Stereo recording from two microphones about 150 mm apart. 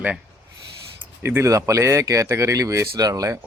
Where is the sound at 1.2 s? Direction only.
20° right (ahead or behind).